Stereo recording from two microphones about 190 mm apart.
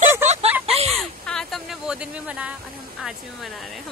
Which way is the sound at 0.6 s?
35° right (ahead or behind).